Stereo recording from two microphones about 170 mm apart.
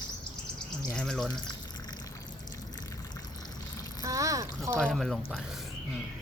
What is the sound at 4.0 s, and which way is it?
Speech, 20° right (ahead or behind).